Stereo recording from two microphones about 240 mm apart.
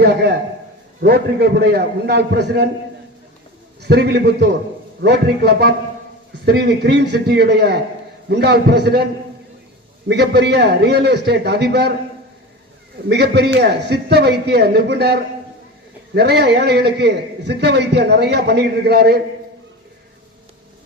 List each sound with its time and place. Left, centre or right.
0.0 s a man's voice: right
3.8 s a man's voice: right
10.1 s a man's voice: right
13.1 s a man's voice: right